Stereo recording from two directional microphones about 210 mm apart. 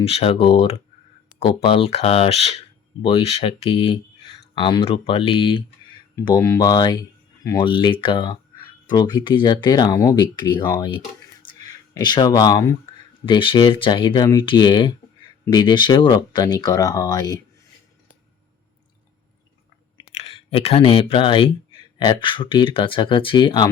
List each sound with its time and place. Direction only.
0.0 s speech: 30° left (ahead or behind)
20.1 s speech: 30° left (ahead or behind)